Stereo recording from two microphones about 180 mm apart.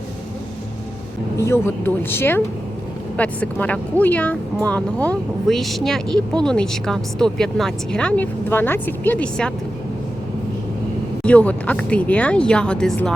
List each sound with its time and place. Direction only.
1.4 s speech: 15° left (ahead or behind)
11.2 s speech: 5° left (ahead or behind)